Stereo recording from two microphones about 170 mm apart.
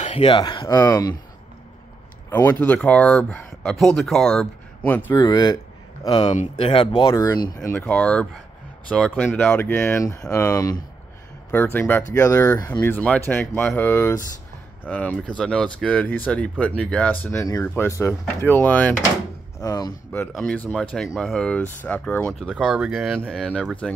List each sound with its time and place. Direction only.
0.0 s speech: 35° left (ahead or behind)
2.2 s speech: 15° left (ahead or behind)
5.2 s speech: 25° left (ahead or behind)
7.6 s speech: 10° left (ahead or behind)
19.6 s speech: 20° left (ahead or behind)
20.1 s speech: 5° left (ahead or behind)